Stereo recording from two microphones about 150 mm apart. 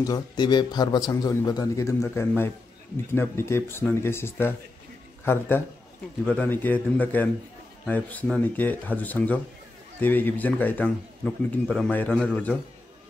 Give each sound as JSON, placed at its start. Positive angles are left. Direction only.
{"t": 0.0, "sound": "a man's voice", "side_deg": 25}